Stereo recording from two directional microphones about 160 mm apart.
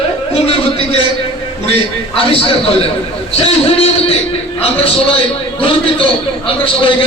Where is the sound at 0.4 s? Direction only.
35° left (ahead or behind).